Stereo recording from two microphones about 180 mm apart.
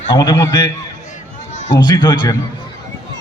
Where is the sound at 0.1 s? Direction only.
20° left (ahead or behind).